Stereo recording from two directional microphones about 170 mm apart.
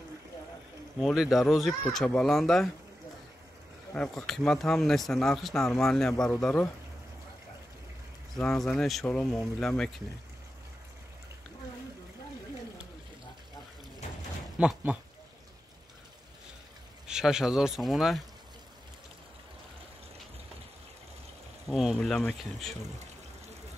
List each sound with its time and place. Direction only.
0.9 s speech: centre (ahead or behind)
3.9 s speech: 5° left (ahead or behind)
8.4 s speech: 5° left (ahead or behind)
14.6 s speech: 5° right (ahead or behind)
17.1 s speech: 5° right (ahead or behind)
21.6 s speech: centre (ahead or behind)